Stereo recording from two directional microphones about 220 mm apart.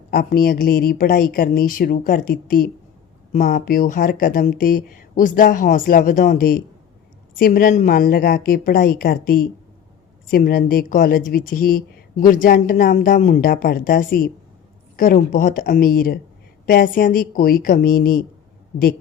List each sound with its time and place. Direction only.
0.1 s speech: 40° left (ahead or behind)